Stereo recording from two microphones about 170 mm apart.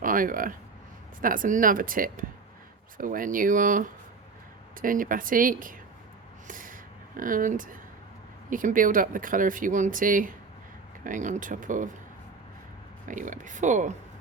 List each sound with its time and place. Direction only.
0.0 s speech: 55° right (ahead or behind)
6.5 s snort: 55° right (ahead or behind)
7.2 s speech: 55° right (ahead or behind)
13.1 s speech: 50° right (ahead or behind)